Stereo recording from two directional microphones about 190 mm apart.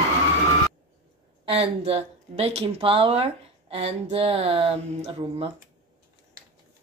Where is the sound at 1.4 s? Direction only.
30° right (ahead or behind).